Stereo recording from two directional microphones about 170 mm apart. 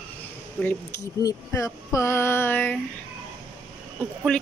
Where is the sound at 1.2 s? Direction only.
20° left (ahead or behind).